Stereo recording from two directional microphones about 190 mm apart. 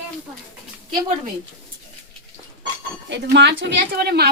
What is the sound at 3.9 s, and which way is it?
Speech, 55° right (ahead or behind).